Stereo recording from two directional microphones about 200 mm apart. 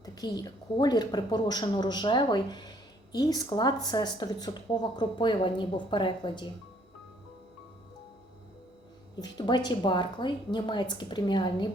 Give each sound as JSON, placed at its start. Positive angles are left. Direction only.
{"t": 0.0, "sound": "a woman's voice", "side_deg": 20}
{"t": 9.2, "sound": "a woman's voice", "side_deg": 20}